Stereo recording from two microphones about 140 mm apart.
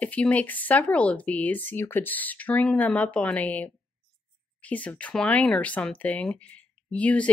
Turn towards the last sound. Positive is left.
turn(degrees=10)  # may be behind; listen again after turning